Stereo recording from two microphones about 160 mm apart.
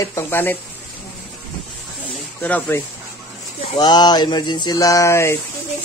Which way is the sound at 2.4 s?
10° left (ahead or behind).